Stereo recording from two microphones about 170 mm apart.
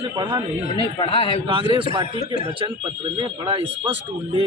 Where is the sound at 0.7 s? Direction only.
30° left (ahead or behind).